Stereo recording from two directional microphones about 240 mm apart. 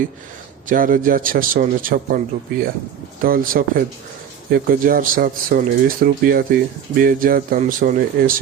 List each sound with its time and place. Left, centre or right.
0.7 s speech: right